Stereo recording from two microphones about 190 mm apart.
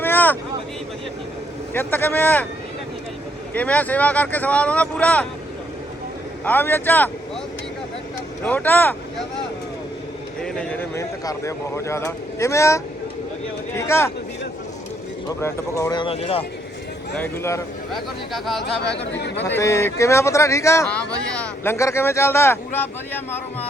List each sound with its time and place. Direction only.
0.0 s vehicle: 10° left (ahead or behind)
1.7 s speech: 10° left (ahead or behind)
3.5 s speech: 10° left (ahead or behind)
6.4 s speech: 10° left (ahead or behind)
8.4 s speech: 10° left (ahead or behind)
10.4 s speech: 5° left (ahead or behind)
15.4 s speech: 15° left (ahead or behind); by 16.4 s 30° left (ahead or behind)
17.9 s speech: centre (ahead or behind)
19.4 s speech: 10° left (ahead or behind)